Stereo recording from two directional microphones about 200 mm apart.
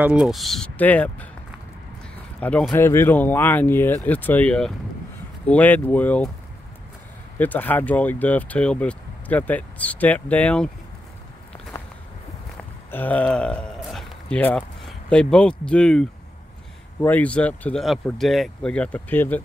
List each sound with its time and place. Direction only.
0.0 s speech: 5° right (ahead or behind)
2.4 s speech: 5° left (ahead or behind)
7.3 s speech: 10° left (ahead or behind)
12.5 s speech: 10° left (ahead or behind)